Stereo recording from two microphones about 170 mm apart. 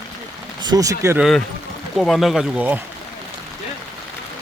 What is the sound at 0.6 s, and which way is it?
Speech, 20° right (ahead or behind).